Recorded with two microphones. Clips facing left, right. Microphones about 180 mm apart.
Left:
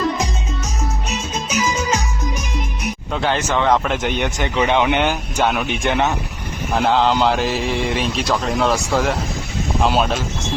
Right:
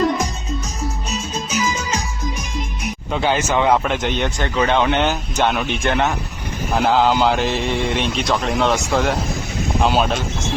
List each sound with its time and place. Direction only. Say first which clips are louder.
3.1 s speech: right 2 dB; 5° right (ahead or behind)
3.8 s speech: even; 10° left (ahead or behind)
5.8 s speech: even; 15° left (ahead or behind)
6.7 s speech: even; centre (ahead or behind)